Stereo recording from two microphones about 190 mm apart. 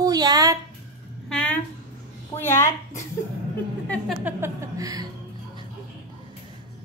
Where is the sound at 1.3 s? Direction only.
5° left (ahead or behind).